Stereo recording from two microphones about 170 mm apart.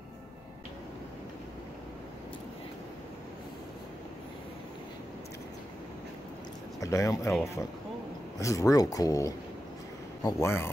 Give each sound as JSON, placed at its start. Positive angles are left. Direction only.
{"t": 6.8, "sound": "speech", "side_deg": 20}
{"t": 8.4, "sound": "speech", "side_deg": 20}